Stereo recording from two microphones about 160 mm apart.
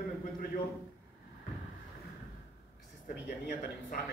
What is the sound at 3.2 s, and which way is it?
Speech, 60° left (ahead or behind).